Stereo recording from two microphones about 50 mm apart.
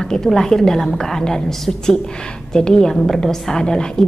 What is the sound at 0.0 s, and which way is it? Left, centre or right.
A woman's voice, centre.